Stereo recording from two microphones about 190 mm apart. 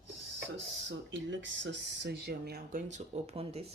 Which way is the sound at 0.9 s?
75° right (ahead or behind).